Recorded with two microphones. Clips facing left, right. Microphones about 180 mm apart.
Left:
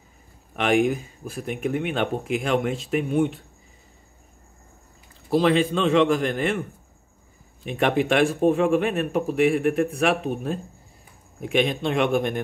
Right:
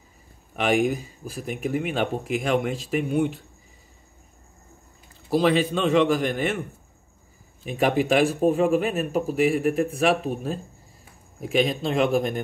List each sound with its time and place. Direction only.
0.6 s a man's voice: centre (ahead or behind)
5.3 s a man's voice: centre (ahead or behind)
7.6 s a man's voice: centre (ahead or behind)